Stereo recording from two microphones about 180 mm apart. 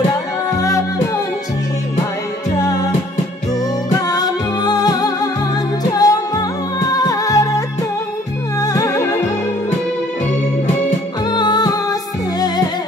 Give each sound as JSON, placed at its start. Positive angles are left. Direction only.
{"t": 0.6, "sound": "music", "side_deg": 20}
{"t": 2.5, "sound": "music", "side_deg": 20}
{"t": 4.1, "sound": "music", "side_deg": 20}
{"t": 11.2, "sound": "music", "side_deg": 25}